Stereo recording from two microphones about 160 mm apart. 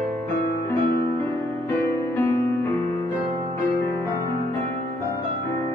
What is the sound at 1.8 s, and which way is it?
Music, 15° left (ahead or behind).